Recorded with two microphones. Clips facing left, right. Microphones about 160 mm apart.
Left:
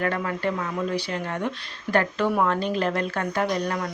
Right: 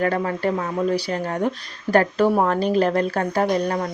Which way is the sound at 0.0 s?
35° right (ahead or behind).